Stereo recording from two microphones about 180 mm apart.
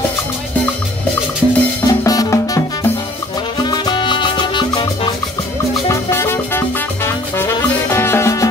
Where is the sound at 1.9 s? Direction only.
20° left (ahead or behind).